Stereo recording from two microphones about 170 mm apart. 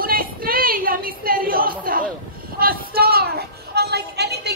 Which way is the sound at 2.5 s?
60° right (ahead or behind).